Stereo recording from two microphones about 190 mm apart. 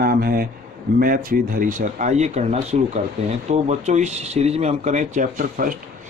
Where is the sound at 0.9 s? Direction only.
50° right (ahead or behind).